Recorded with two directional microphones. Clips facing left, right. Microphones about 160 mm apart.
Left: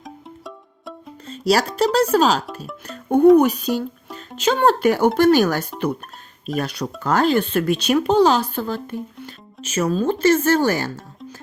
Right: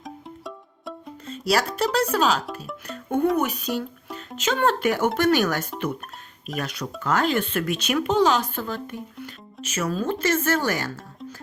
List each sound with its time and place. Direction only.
0.0 s music: centre (ahead or behind)
1.3 s music: 30° left (ahead or behind)
1.8 s speech: 30° left (ahead or behind)